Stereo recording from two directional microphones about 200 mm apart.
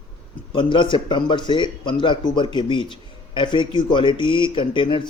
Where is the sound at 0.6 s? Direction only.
25° left (ahead or behind).